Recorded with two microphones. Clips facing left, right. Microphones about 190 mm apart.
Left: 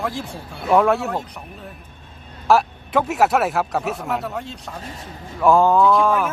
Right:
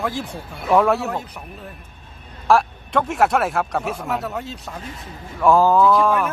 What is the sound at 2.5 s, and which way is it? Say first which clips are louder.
Speech: even; 5° left (ahead or behind).